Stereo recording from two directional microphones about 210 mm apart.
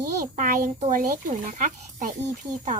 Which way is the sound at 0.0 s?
40° right (ahead or behind).